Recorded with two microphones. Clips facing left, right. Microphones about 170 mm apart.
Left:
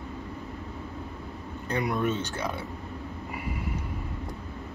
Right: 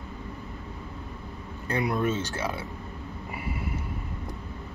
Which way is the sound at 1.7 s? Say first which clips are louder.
Right 1 dB; centre (ahead or behind).